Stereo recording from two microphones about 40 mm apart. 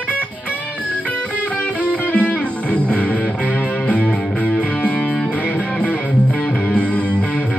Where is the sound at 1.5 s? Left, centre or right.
Left.